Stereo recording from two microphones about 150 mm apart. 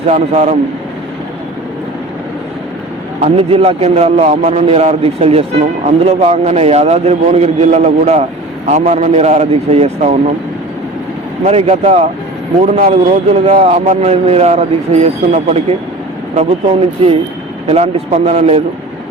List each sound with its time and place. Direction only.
0.1 s a man's voice: 50° right (ahead or behind)
3.2 s a man's voice: 40° right (ahead or behind)
11.4 s a man's voice: 45° right (ahead or behind)
17.0 s a man's voice: 40° right (ahead or behind)